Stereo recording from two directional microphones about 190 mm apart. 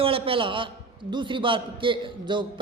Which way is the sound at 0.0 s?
30° right (ahead or behind).